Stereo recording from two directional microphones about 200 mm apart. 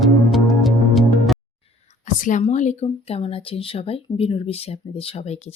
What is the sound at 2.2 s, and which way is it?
Speech, 40° left (ahead or behind).